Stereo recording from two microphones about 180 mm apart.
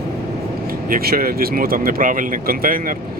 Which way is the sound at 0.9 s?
55° right (ahead or behind).